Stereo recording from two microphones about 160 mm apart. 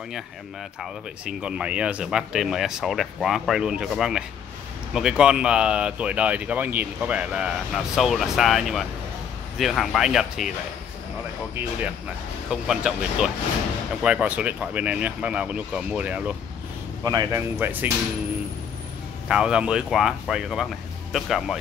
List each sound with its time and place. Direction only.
0.7 s speech: 5° right (ahead or behind)
12.4 s speech: centre (ahead or behind)
17.0 s speech: 20° right (ahead or behind)
19.2 s speech: 5° right (ahead or behind)